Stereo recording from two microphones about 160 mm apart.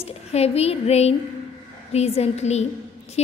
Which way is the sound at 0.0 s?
40° left (ahead or behind).